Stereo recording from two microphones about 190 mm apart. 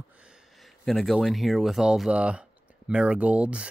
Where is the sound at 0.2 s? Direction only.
Centre (ahead or behind).